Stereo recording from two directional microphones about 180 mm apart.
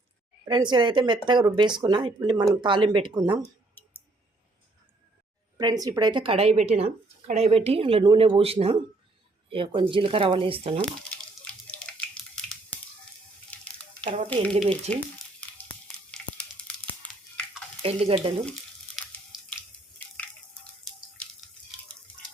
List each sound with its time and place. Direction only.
0.4 s speech: 25° right (ahead or behind)
3.8 s clicking: 10° left (ahead or behind)
5.5 s a woman's voice: 20° right (ahead or behind)
14.3 s speech: 5° left (ahead or behind)
15.4 s a sound: 10° left (ahead or behind)
17.8 s a woman's voice: 35° right (ahead or behind)
18.9 s a sound: centre (ahead or behind)